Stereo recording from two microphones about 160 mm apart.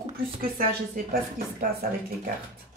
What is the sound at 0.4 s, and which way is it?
Speech, 65° right (ahead or behind).